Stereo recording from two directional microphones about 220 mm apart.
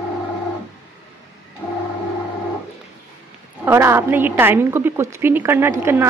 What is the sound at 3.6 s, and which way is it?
A woman's voice, 10° right (ahead or behind).